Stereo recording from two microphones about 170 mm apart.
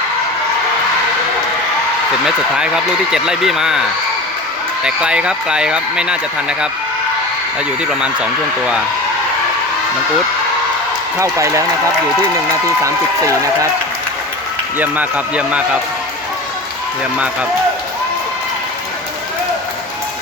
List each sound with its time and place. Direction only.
2.2 s speech: 5° right (ahead or behind)
8.0 s speech: 5° right (ahead or behind)
11.2 s speech: 20° right (ahead or behind)
12.8 s speech: 20° right (ahead or behind)
14.8 s speech: 10° right (ahead or behind)